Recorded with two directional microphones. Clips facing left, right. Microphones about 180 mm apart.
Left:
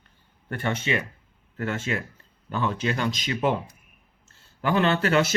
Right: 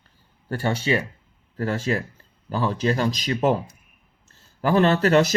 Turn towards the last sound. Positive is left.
turn(degrees=-40)  # may be behind; listen again after turning